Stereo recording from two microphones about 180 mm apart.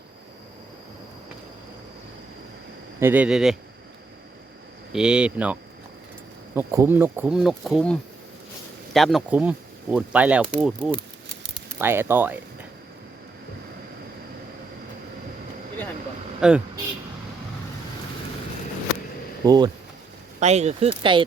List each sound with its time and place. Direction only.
3.0 s speech: 10° right (ahead or behind)
4.9 s speech: 5° right (ahead or behind)
16.4 s speech: 5° right (ahead or behind)
19.5 s speech: 20° right (ahead or behind)
20.4 s speech: 40° right (ahead or behind)